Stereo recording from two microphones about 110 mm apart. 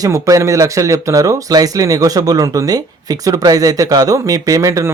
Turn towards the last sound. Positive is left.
turn(degrees=-30)  # may be behind; listen again after turning